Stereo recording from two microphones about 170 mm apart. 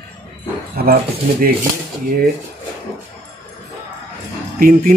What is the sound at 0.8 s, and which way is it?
Speech, 65° right (ahead or behind).